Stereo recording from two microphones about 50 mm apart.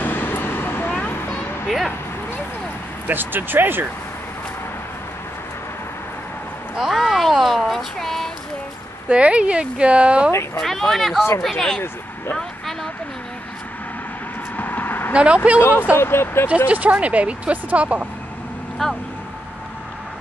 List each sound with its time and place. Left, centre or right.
0.0 s vehicle: left
3.1 s speech: right
6.9 s a sound: centre
9.1 s speech: right
10.6 s speech: centre
12.4 s a sound: centre
14.6 s vehicle: left
15.1 s speech: right
16.0 s speech: left
16.4 s speech: right
18.8 s speech: centre